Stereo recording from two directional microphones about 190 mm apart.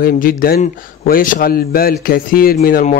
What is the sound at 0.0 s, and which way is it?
Speech, 50° left (ahead or behind).